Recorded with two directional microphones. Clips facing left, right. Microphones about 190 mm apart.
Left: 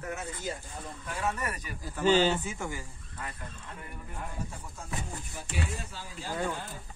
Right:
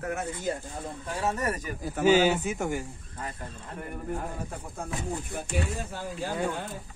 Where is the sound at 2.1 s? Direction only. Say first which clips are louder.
Right 3 dB; 10° right (ahead or behind).